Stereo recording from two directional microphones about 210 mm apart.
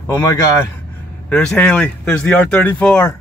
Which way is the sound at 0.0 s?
15° left (ahead or behind).